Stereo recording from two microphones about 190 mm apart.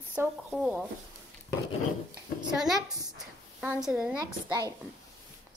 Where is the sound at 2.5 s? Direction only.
Centre (ahead or behind).